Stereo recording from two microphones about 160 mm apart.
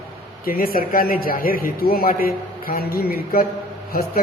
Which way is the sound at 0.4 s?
65° left (ahead or behind).